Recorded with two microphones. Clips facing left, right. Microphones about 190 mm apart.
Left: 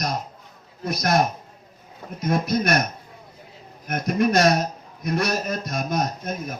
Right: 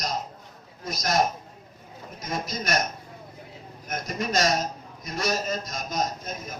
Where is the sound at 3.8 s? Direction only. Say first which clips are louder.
Left 9 dB; 60° left (ahead or behind).